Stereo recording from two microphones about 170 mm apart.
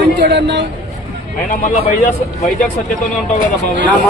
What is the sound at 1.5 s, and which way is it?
A man's voice, 50° left (ahead or behind).